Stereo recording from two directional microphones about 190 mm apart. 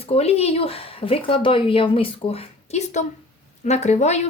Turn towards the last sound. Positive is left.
turn(degrees=35)  # may be behind; listen again after turning